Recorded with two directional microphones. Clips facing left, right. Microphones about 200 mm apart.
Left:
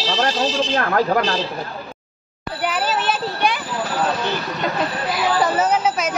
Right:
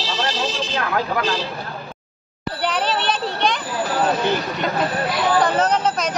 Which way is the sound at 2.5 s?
5° left (ahead or behind).